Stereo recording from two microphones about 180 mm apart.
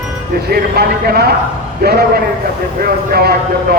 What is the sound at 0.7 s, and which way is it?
Speech, 60° right (ahead or behind).